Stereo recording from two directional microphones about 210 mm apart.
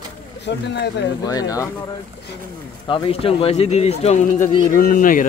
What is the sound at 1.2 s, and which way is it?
Speech, 15° left (ahead or behind).